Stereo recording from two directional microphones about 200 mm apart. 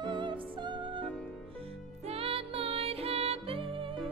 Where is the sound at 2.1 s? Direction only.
30° right (ahead or behind).